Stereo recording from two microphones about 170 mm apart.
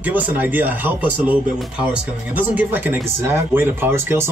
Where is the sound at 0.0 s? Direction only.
10° right (ahead or behind).